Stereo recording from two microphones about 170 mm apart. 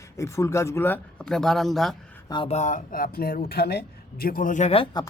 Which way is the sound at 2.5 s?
45° left (ahead or behind).